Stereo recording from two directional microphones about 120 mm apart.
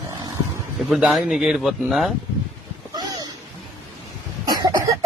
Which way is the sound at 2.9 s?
30° right (ahead or behind).